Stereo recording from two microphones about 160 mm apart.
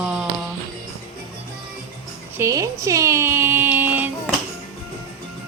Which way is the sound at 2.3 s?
20° right (ahead or behind).